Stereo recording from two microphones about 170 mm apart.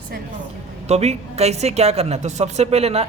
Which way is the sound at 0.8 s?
40° right (ahead or behind).